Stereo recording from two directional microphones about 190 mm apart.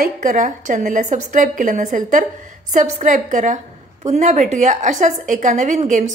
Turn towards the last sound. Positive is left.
turn(degrees=-40)  # may be behind; listen again after turning